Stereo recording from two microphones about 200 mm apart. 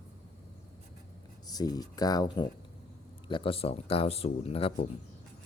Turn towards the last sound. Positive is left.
turn(degrees=30)  # may be behind; listen again after turning